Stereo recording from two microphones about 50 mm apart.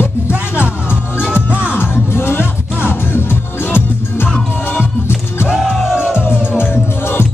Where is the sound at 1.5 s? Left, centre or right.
Right.